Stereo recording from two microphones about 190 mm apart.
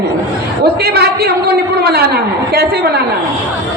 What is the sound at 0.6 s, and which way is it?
A woman's voice, 55° right (ahead or behind).